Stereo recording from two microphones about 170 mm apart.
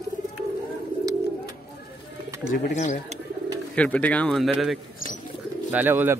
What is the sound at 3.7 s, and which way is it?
Speech, 10° left (ahead or behind).